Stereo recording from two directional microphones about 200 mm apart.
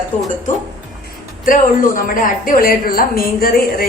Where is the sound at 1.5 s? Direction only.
45° left (ahead or behind).